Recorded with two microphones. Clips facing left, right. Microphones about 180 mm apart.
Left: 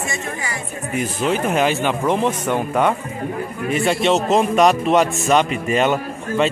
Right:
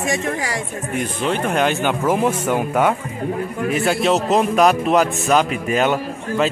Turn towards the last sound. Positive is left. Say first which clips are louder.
# even
turn(degrees=0)  # may be behind; listen again after turning